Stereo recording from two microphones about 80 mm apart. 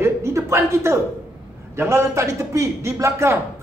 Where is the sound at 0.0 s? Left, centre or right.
Right.